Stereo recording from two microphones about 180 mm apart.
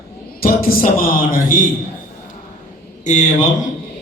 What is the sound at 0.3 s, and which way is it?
A man's voice, 55° left (ahead or behind).